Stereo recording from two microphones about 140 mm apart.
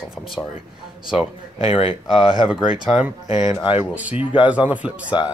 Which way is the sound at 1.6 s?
40° left (ahead or behind).